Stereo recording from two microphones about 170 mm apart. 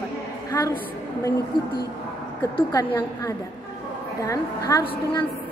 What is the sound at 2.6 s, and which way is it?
A woman's voice, 25° left (ahead or behind).